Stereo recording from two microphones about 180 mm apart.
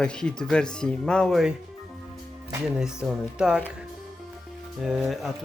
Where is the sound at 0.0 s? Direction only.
5° left (ahead or behind).